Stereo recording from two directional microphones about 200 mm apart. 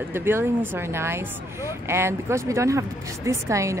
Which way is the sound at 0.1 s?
10° right (ahead or behind).